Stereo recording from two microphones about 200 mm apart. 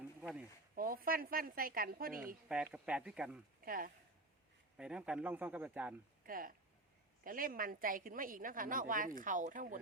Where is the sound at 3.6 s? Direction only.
45° right (ahead or behind).